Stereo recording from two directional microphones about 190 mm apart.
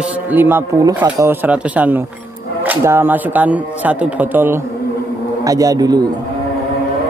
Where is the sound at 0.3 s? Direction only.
10° right (ahead or behind).